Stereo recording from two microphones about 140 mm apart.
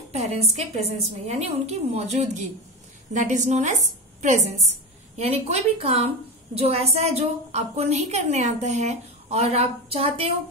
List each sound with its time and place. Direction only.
0.1 s a woman's voice: 50° right (ahead or behind)